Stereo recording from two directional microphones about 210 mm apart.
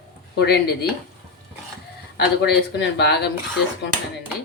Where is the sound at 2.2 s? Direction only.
50° left (ahead or behind).